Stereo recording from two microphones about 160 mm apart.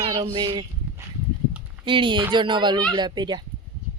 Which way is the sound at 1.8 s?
30° right (ahead or behind).